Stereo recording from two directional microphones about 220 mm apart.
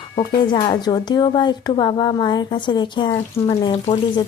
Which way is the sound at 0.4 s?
20° left (ahead or behind).